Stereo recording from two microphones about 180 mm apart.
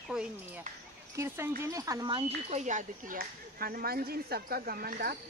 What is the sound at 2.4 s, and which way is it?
Speech, 40° right (ahead or behind).